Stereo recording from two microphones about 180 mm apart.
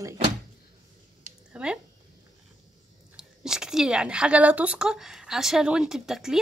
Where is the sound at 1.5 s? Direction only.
5° right (ahead or behind).